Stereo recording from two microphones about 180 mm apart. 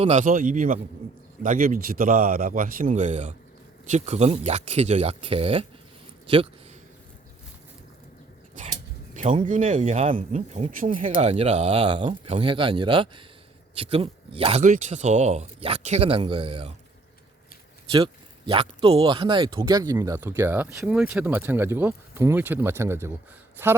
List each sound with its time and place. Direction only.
0.0 s speech: 40° right (ahead or behind)
8.6 s dog: 45° right (ahead or behind)
9.1 s speech: 35° right (ahead or behind)
14.6 s speech: 40° right (ahead or behind)
17.9 s speech: 30° right (ahead or behind); by 23.7 s 10° right (ahead or behind)